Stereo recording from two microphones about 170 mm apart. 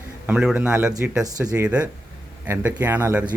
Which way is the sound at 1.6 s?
5° right (ahead or behind).